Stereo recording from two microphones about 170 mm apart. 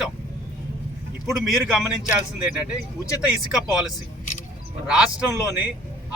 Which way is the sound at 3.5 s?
5° right (ahead or behind).